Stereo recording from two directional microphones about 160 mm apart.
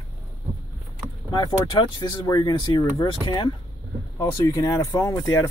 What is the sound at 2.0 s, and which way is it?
Speech, 25° left (ahead or behind).